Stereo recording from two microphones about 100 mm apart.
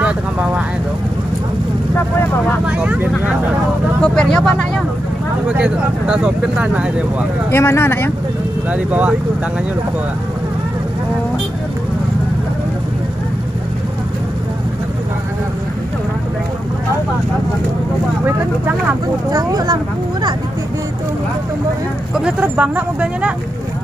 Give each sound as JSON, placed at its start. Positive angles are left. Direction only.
{"t": 0.0, "sound": "speech", "side_deg": -15}
{"t": 2.6, "sound": "speech", "side_deg": -15}
{"t": 4.0, "sound": "speech", "side_deg": 10}
{"t": 5.6, "sound": "speech", "side_deg": -10}
{"t": 7.5, "sound": "speech", "side_deg": 25}
{"t": 8.6, "sound": "speech", "side_deg": -15}
{"t": 19.3, "sound": "speech", "side_deg": -40}
{"t": 22.1, "sound": "speech", "side_deg": -10}